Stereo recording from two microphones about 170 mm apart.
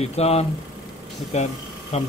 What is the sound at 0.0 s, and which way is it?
Speech, 40° left (ahead or behind).